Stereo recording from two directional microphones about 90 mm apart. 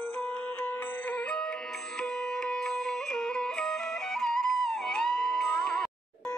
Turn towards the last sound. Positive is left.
turn(degrees=5)  # may be behind; listen again after turning